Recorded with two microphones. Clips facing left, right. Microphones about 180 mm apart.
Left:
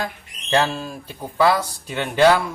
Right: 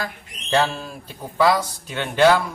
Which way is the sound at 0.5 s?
10° left (ahead or behind).